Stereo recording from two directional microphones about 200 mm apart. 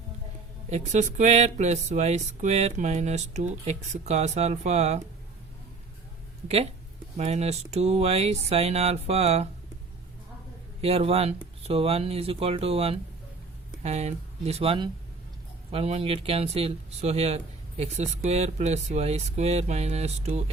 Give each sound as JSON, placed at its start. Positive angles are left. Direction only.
{"t": 0.7, "sound": "speech", "side_deg": -35}
{"t": 7.2, "sound": "speech", "side_deg": -30}
{"t": 10.8, "sound": "speech", "side_deg": -30}